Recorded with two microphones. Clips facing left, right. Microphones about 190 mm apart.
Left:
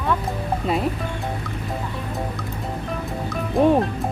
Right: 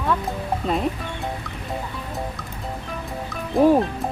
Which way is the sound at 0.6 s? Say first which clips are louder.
Even; 5° left (ahead or behind).